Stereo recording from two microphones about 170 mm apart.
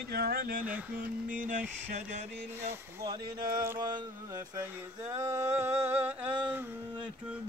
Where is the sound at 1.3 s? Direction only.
50° right (ahead or behind).